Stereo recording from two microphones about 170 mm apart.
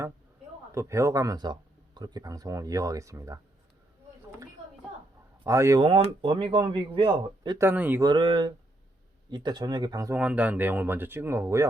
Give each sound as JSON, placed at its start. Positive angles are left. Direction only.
{"t": 0.7, "sound": "speech", "side_deg": -15}
{"t": 5.4, "sound": "speech", "side_deg": -15}
{"t": 5.8, "sound": "speech", "side_deg": -30}
{"t": 7.6, "sound": "speech", "side_deg": -10}
{"t": 8.0, "sound": "speech", "side_deg": -25}
{"t": 10.2, "sound": "speech", "side_deg": -10}